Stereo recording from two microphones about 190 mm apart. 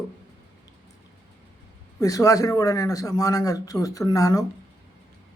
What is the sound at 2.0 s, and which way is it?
Speech, 20° left (ahead or behind).